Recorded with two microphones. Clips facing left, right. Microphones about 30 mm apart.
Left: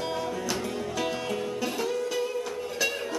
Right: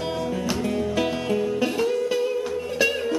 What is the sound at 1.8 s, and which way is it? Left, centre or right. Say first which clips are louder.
Music: right 6 dB; centre.